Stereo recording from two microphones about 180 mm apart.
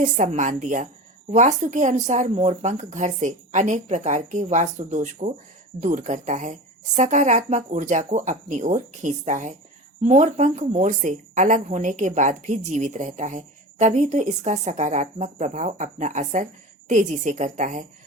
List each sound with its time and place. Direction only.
0.0 s speech: 40° right (ahead or behind)